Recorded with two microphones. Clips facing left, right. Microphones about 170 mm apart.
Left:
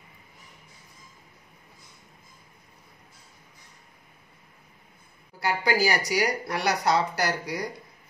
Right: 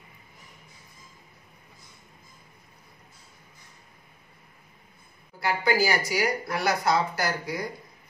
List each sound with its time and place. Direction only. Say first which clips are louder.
5.6 s speech: right 1 dB; 35° left (ahead or behind)